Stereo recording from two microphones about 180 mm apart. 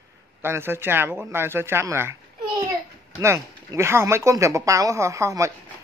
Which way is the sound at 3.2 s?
15° right (ahead or behind).